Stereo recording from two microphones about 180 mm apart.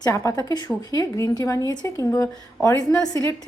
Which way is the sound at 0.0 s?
15° left (ahead or behind).